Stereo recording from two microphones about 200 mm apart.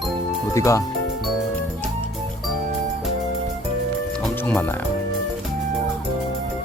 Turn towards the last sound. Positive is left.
turn(degrees=10)  # may be behind; listen again after turning